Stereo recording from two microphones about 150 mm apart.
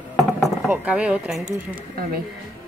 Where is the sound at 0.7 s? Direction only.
10° right (ahead or behind).